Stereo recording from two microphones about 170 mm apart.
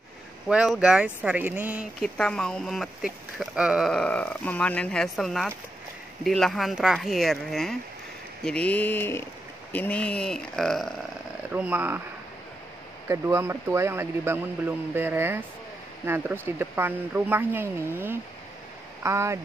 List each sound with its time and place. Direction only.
0.5 s speech: 5° right (ahead or behind)
2.0 s speech: 5° left (ahead or behind)
8.5 s mantra: 10° left (ahead or behind)
9.7 s speech: 10° left (ahead or behind)
11.5 s speech: 10° right (ahead or behind)
13.1 s speech: 15° right (ahead or behind)